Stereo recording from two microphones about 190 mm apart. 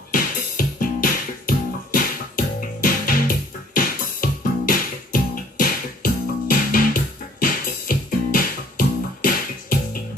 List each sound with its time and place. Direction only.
0.1 s music: 45° left (ahead or behind)